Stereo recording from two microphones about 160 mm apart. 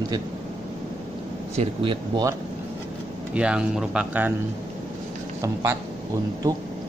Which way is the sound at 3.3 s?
5° right (ahead or behind).